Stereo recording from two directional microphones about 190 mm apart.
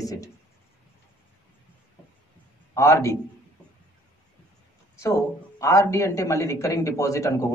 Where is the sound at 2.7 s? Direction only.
15° left (ahead or behind).